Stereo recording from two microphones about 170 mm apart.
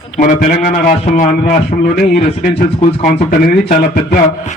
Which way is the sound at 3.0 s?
40° left (ahead or behind).